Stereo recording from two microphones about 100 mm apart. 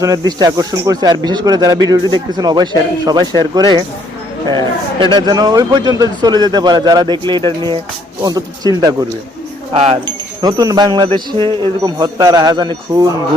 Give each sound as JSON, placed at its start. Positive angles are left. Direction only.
{"t": 0.0, "sound": "speech", "side_deg": -40}
{"t": 10.4, "sound": "speech", "side_deg": -40}